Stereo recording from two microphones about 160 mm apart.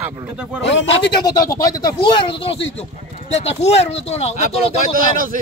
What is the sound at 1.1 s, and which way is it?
A man's voice, 25° left (ahead or behind).